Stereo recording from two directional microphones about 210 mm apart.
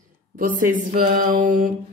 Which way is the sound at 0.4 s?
40° right (ahead or behind).